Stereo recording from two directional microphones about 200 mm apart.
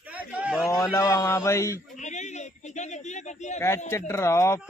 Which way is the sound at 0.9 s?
15° left (ahead or behind).